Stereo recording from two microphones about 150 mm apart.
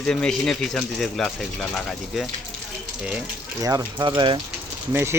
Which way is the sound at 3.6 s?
25° right (ahead or behind).